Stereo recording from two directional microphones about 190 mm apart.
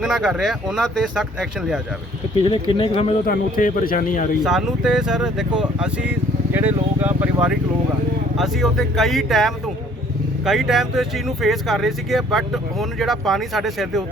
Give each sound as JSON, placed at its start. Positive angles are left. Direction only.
{"t": 0.0, "sound": "speech", "side_deg": 0}
{"t": 2.4, "sound": "speech", "side_deg": 30}
{"t": 3.2, "sound": "speech", "side_deg": 45}
{"t": 4.4, "sound": "speech", "side_deg": 0}